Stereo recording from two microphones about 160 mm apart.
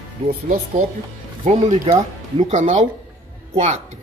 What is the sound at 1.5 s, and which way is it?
A woman's voice, 45° right (ahead or behind).